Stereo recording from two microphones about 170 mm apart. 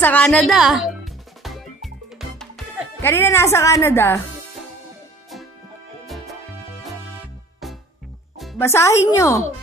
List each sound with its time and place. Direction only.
0.0 s music: 10° left (ahead or behind)
3.0 s speech: 15° left (ahead or behind)
6.0 s music: centre (ahead or behind)
7.6 s music: centre (ahead or behind)
8.5 s speech: 15° left (ahead or behind)